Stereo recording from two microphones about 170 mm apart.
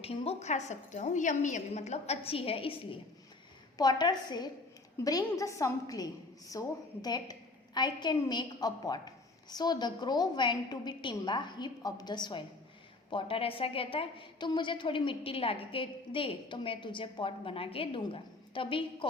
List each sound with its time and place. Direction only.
0.0 s a woman's voice: 35° left (ahead or behind)